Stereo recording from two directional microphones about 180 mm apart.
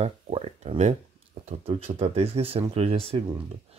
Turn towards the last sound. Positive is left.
turn(degrees=-35)  # may be behind; listen again after turning